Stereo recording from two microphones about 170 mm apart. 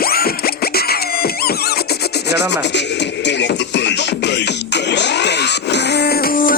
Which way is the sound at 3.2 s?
90° left.